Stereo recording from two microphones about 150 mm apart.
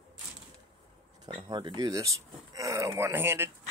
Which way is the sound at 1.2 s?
30° right (ahead or behind).